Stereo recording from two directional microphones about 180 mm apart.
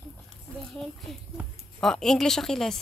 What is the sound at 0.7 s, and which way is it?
A woman's voice, centre (ahead or behind).